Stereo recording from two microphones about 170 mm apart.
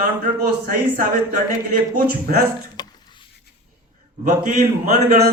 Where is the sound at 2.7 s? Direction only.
25° left (ahead or behind).